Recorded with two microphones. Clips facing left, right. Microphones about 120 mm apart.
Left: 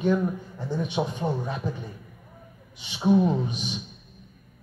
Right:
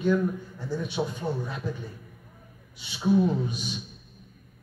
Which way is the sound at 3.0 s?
20° left (ahead or behind).